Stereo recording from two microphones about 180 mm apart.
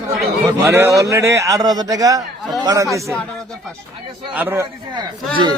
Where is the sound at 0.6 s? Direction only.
15° right (ahead or behind).